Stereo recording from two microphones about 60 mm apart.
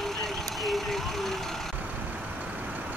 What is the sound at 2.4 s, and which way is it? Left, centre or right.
Vehicle, right.